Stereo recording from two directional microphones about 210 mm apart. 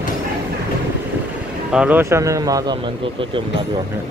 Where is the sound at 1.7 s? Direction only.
5° right (ahead or behind); by 3.5 s 25° right (ahead or behind).